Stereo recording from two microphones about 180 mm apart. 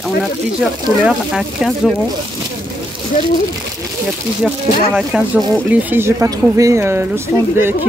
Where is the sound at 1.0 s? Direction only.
Centre (ahead or behind).